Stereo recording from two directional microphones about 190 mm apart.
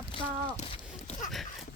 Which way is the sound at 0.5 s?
30° left (ahead or behind).